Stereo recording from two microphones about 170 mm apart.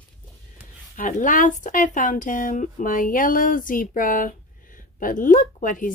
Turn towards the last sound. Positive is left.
turn(degrees=50)  # may be behind; listen again after turning